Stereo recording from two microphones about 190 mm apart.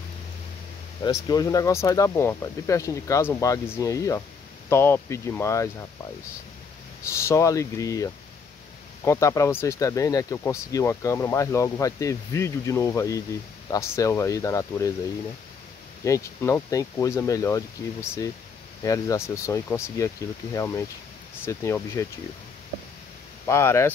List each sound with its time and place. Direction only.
1.0 s speech: 20° left (ahead or behind)
7.1 s speech: 15° left (ahead or behind)
16.0 s speech: 15° left (ahead or behind)
18.9 s speech: 15° left (ahead or behind)
23.4 s speech: 15° left (ahead or behind)